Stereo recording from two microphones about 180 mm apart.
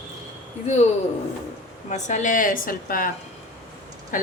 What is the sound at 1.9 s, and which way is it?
A woman's voice, 45° left (ahead or behind).